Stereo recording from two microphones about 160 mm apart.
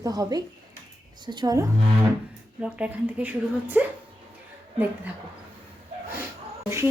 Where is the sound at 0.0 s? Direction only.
20° right (ahead or behind).